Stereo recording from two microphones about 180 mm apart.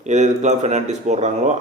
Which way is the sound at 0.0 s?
40° right (ahead or behind).